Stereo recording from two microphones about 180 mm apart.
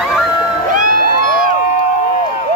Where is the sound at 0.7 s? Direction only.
50° right (ahead or behind).